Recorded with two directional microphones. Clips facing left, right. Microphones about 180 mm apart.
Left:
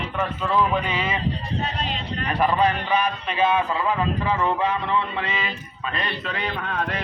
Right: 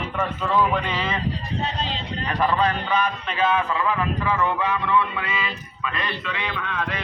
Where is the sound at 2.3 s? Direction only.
25° left (ahead or behind).